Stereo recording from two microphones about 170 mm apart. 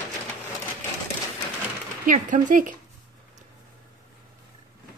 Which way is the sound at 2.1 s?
50° right (ahead or behind).